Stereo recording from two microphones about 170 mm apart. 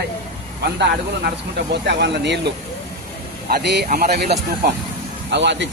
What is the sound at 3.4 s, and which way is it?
Speech, 65° right (ahead or behind).